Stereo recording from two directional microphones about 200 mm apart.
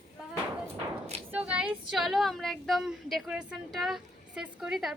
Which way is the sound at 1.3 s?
5° right (ahead or behind).